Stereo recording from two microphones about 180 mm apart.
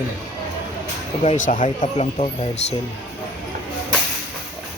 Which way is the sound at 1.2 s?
40° left (ahead or behind).